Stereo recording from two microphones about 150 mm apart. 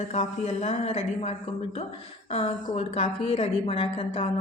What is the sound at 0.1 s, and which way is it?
A woman's voice, 45° left (ahead or behind).